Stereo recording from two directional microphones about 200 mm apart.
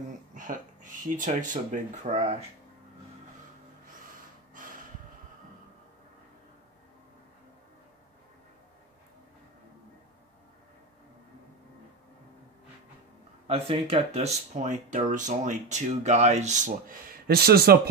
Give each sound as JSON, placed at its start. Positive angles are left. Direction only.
{"t": 0.3, "sound": "speech", "side_deg": -40}
{"t": 13.5, "sound": "speech", "side_deg": -30}